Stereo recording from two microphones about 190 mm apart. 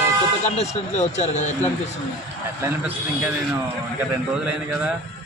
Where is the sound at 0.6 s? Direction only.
35° left (ahead or behind).